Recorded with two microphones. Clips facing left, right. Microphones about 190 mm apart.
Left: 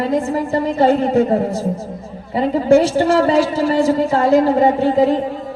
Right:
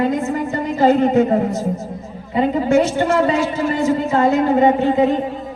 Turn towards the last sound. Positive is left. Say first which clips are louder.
# left 1 dB
turn(degrees=35)  # may be behind; listen again after turning